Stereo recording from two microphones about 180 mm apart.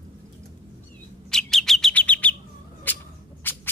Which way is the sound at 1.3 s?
5° left (ahead or behind).